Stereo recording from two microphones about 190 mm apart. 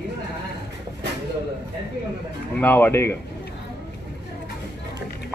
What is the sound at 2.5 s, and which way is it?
Speech, 10° left (ahead or behind).